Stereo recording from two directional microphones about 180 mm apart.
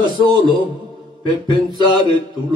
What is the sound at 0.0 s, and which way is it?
Mantra, 25° right (ahead or behind).